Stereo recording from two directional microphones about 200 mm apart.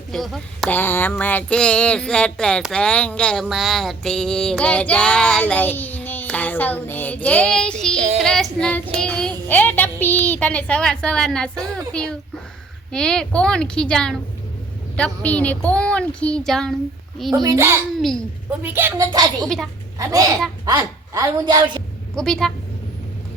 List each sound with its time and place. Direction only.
0.1 s female singing: centre (ahead or behind)
7.9 s child singing: 35° right (ahead or behind)
8.2 s female singing: 5° left (ahead or behind)
9.0 s a child's voice: 5° left (ahead or behind)
11.9 s female singing: 5° left (ahead or behind)
17.3 s a child's voice: 15° right (ahead or behind)
22.1 s female singing: 5° left (ahead or behind)